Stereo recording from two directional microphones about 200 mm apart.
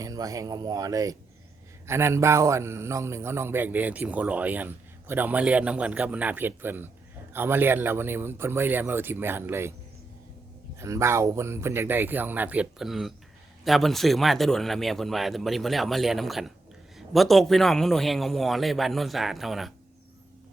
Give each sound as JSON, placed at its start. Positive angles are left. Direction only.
{"t": 0.0, "sound": "a man's voice", "side_deg": -15}
{"t": 10.8, "sound": "a man's voice", "side_deg": -15}